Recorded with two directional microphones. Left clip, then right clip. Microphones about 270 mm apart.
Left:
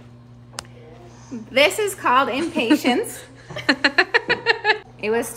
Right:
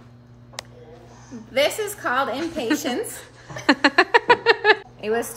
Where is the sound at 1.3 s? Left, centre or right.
Centre.